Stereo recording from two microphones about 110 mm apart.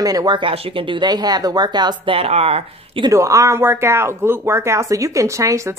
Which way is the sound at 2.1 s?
65° right (ahead or behind).